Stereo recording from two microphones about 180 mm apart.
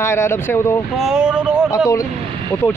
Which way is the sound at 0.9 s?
5° right (ahead or behind).